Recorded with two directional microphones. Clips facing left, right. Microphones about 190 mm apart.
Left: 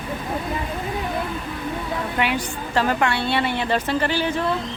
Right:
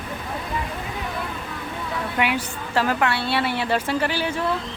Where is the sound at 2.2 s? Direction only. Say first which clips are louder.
Right 1 dB; 10° right (ahead or behind).